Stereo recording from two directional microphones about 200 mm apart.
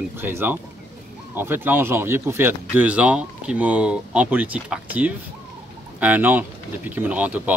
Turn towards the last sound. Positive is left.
turn(degrees=-5)  # may be behind; listen again after turning